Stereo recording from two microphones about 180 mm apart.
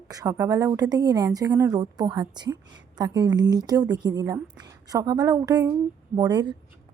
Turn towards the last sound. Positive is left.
turn(degrees=-25)  # may be behind; listen again after turning